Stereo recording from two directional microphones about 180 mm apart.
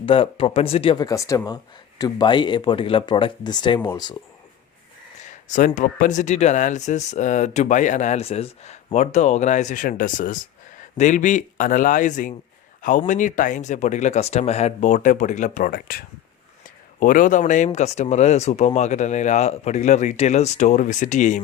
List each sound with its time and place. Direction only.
0.0 s speech: 30° left (ahead or behind)
5.5 s speech: 45° left (ahead or behind)